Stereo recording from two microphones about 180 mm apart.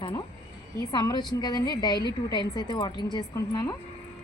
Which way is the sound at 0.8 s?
20° left (ahead or behind).